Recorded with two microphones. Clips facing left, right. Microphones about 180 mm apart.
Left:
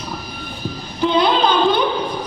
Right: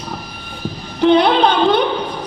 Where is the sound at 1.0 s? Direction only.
70° right (ahead or behind).